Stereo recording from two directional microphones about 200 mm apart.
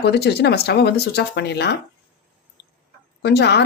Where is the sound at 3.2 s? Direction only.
55° left (ahead or behind).